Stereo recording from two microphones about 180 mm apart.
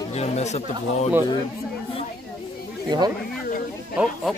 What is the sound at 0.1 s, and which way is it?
Speech, 35° left (ahead or behind).